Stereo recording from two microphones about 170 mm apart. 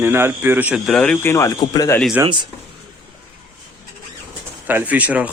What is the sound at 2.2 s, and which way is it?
Speech, 25° right (ahead or behind).